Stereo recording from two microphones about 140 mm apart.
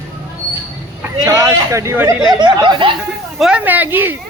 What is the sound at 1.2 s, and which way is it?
A man's voice, 25° right (ahead or behind).